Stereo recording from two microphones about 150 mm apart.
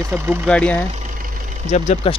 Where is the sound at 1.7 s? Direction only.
50° left (ahead or behind).